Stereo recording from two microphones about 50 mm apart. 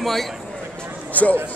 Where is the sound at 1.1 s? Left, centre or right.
Left.